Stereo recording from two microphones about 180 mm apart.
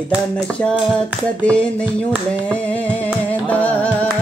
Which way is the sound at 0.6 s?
5° left (ahead or behind).